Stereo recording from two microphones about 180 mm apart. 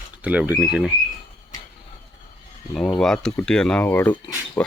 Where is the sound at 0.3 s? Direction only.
10° right (ahead or behind).